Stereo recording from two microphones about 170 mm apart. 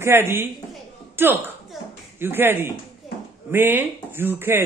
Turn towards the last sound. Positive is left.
turn(degrees=-15)  # may be behind; listen again after turning